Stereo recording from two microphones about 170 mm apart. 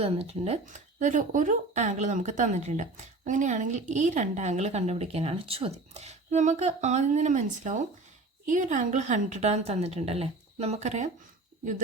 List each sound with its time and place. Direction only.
0.0 s speech: 35° right (ahead or behind)